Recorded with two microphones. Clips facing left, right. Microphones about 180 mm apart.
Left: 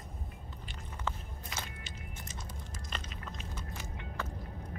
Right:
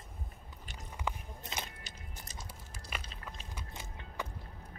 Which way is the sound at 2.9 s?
10° right (ahead or behind).